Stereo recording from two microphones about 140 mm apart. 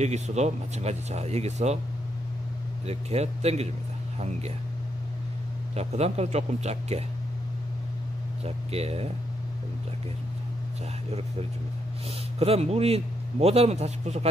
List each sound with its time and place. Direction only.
0.0 s a man's voice: 55° right (ahead or behind)
2.9 s a man's voice: 50° right (ahead or behind)
5.8 s a man's voice: 50° right (ahead or behind)
8.5 s a man's voice: 45° right (ahead or behind)
12.4 s a man's voice: 45° right (ahead or behind)